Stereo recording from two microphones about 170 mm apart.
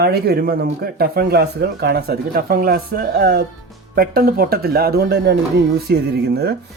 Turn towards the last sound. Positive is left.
turn(degrees=-70)  # may be behind; listen again after turning